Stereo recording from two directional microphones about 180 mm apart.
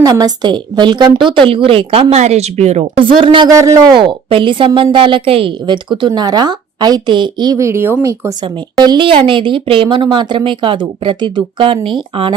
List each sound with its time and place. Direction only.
0.0 s a woman's voice: 20° right (ahead or behind); by 3.1 s 40° right (ahead or behind)
3.1 s a woman's voice: 30° right (ahead or behind)
8.8 s a woman's voice: 25° right (ahead or behind)